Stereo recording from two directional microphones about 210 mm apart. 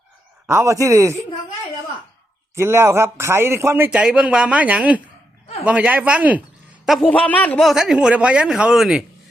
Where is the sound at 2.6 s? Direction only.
10° right (ahead or behind).